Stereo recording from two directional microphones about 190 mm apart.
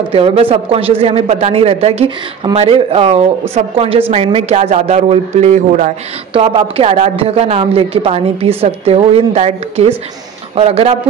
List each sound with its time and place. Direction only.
0.1 s speech: 30° right (ahead or behind)